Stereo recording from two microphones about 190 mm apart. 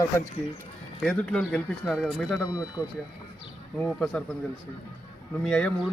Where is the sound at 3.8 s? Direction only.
5° left (ahead or behind).